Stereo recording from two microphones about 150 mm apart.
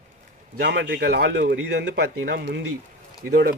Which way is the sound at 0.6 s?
90° right.